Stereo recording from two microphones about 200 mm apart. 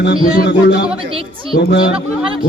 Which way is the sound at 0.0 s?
60° left (ahead or behind).